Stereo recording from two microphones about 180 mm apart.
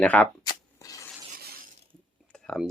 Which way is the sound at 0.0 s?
10° left (ahead or behind).